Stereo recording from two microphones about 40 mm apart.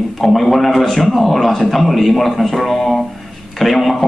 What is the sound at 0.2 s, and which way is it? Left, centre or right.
A man's voice, centre.